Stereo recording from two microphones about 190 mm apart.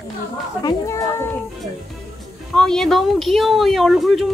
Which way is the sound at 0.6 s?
15° left (ahead or behind).